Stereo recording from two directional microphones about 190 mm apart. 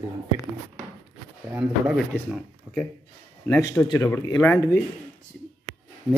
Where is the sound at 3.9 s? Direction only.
15° left (ahead or behind).